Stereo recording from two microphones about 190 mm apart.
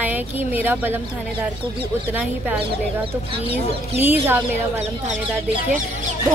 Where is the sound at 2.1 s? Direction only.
10° right (ahead or behind).